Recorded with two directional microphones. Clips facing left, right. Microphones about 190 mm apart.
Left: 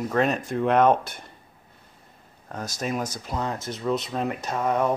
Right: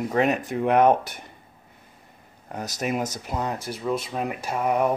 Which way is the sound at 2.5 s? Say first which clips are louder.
Right 2 dB; 15° right (ahead or behind).